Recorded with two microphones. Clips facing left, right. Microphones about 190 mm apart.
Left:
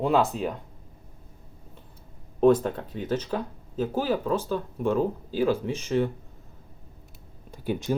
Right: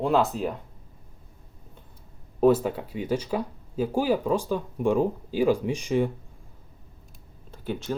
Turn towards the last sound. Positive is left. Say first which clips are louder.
# left 3 dB
turn(degrees=15)  # may be behind; listen again after turning